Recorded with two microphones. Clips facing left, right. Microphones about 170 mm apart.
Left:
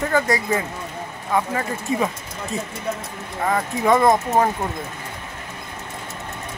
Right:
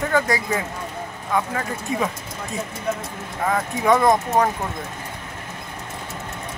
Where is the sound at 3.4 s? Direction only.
Centre (ahead or behind).